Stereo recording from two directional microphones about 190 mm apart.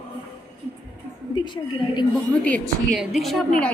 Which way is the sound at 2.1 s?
5° left (ahead or behind).